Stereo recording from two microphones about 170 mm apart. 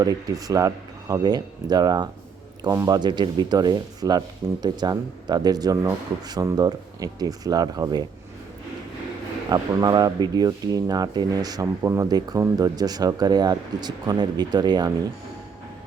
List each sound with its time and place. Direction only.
0.0 s speech: 20° right (ahead or behind)
9.5 s speech: 20° right (ahead or behind)